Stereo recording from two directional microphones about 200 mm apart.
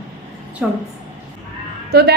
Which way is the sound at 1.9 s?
50° right (ahead or behind).